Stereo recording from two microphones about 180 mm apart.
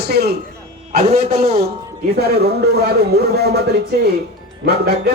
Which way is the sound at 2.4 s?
65° right (ahead or behind).